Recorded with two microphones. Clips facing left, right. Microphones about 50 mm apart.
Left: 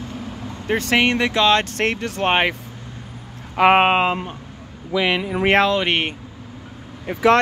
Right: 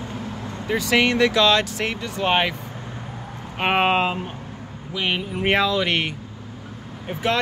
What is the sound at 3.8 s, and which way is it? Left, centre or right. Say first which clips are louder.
Speech: left 3 dB; left.